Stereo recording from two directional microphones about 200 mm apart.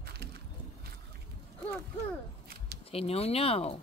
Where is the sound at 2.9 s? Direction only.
30° left (ahead or behind).